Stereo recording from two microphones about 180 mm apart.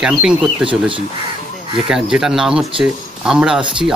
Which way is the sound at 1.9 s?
5° right (ahead or behind).